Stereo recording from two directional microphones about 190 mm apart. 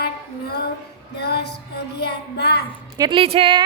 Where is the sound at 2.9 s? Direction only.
25° right (ahead or behind).